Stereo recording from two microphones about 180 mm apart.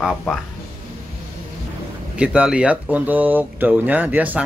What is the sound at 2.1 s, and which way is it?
Speech, 5° right (ahead or behind).